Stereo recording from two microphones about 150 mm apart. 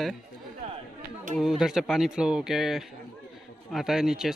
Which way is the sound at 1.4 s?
5° right (ahead or behind).